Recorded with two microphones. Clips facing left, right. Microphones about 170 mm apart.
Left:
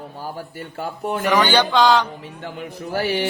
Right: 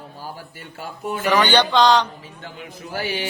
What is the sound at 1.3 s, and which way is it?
Music, 10° left (ahead or behind).